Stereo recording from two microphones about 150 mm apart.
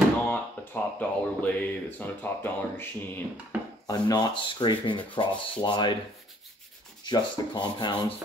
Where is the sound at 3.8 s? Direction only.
25° left (ahead or behind).